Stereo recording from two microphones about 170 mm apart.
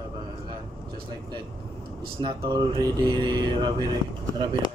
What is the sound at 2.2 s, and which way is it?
Speech, 30° right (ahead or behind).